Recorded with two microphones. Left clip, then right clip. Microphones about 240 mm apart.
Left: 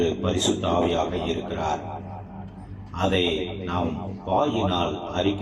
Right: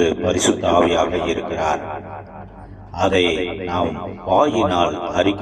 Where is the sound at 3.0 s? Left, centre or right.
Right.